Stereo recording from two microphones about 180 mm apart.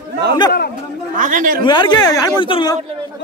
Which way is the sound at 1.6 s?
25° left (ahead or behind).